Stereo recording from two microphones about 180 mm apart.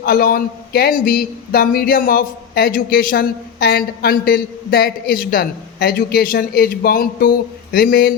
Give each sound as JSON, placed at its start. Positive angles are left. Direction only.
{"t": 0.0, "sound": "speech", "side_deg": 55}